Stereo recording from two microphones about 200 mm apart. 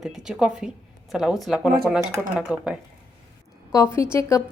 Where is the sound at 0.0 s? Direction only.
5° right (ahead or behind).